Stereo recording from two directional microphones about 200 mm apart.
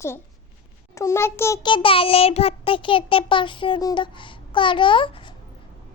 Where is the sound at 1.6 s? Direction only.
25° left (ahead or behind).